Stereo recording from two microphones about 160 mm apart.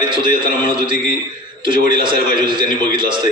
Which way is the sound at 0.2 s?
30° right (ahead or behind).